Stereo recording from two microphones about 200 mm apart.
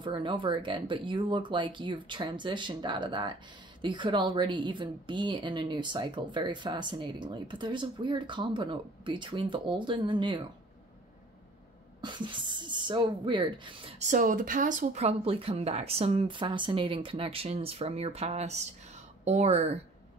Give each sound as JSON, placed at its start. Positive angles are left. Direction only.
{"t": 0.0, "sound": "a woman's voice", "side_deg": -25}
{"t": 12.0, "sound": "a woman's voice", "side_deg": -25}